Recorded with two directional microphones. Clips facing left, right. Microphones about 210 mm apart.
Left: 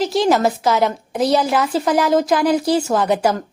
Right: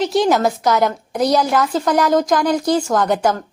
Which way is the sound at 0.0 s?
Centre (ahead or behind).